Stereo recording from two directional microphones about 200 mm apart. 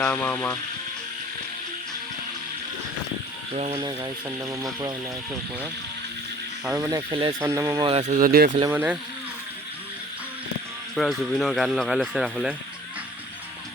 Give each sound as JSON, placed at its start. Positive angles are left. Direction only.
{"t": 0.0, "sound": "speech", "side_deg": 10}
{"t": 3.5, "sound": "speech", "side_deg": -35}
{"t": 3.8, "sound": "speech", "side_deg": -20}
{"t": 6.7, "sound": "speech", "side_deg": -15}
{"t": 7.4, "sound": "speech", "side_deg": -15}
{"t": 8.1, "sound": "speech", "side_deg": -45}
{"t": 8.7, "sound": "speech", "side_deg": -10}
{"t": 10.9, "sound": "speech", "side_deg": 0}